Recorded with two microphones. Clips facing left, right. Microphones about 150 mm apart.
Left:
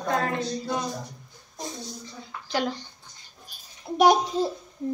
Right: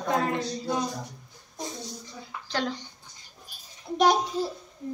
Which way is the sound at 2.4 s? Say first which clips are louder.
Left 3 dB; 10° left (ahead or behind).